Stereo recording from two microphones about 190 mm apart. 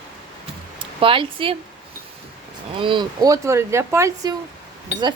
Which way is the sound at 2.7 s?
25° right (ahead or behind).